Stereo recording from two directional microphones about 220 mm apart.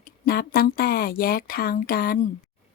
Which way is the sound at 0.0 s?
40° left (ahead or behind).